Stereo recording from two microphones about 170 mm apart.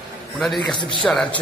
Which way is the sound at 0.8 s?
30° left (ahead or behind).